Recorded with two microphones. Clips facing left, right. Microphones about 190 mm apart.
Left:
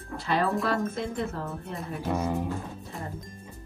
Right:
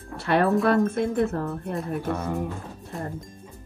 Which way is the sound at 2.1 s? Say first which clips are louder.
Left 3 dB; 10° left (ahead or behind).